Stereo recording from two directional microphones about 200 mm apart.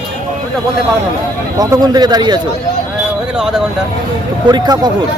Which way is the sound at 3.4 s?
5° right (ahead or behind).